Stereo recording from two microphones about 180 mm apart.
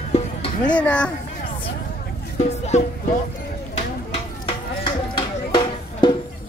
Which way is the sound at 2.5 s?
40° left (ahead or behind).